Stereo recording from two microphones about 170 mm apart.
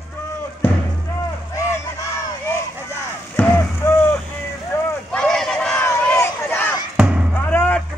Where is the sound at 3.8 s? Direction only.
15° left (ahead or behind).